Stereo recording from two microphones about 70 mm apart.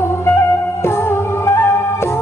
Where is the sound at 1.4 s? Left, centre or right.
Left.